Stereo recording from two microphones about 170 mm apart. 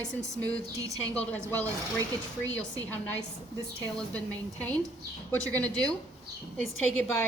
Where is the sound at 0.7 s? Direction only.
20° right (ahead or behind).